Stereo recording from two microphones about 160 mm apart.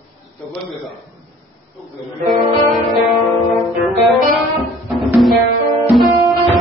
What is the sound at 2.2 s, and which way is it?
Music, centre (ahead or behind).